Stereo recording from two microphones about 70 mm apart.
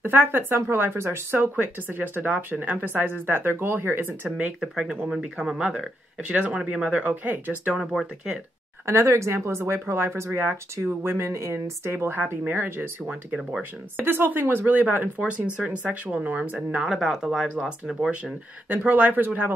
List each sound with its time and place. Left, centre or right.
0.0 s speech: right
4.6 s speech: centre
7.8 s speech: centre
8.8 s speech: right
12.2 s speech: right
13.0 s speech: centre
16.8 s speech: centre
18.0 s speech: centre